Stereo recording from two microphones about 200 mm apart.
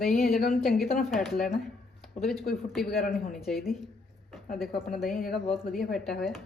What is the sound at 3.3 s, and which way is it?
Speech, centre (ahead or behind).